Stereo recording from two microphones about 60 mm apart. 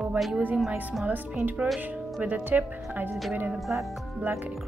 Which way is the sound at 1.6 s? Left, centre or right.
Centre.